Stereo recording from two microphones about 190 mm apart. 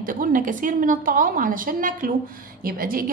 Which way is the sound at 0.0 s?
45° right (ahead or behind).